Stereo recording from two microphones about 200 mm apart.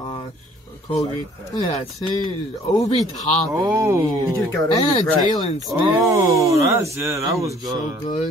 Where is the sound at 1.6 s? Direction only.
30° left (ahead or behind).